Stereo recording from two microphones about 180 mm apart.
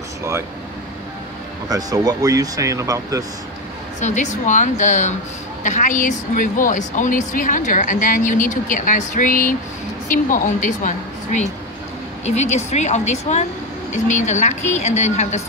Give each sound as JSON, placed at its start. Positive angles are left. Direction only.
{"t": 0.2, "sound": "speech", "side_deg": -15}
{"t": 1.7, "sound": "speech", "side_deg": -20}
{"t": 4.0, "sound": "a woman's voice", "side_deg": 40}